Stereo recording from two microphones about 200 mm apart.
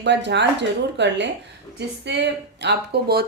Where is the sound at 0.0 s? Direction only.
60° right (ahead or behind).